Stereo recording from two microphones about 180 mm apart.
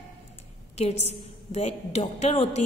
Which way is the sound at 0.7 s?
35° left (ahead or behind).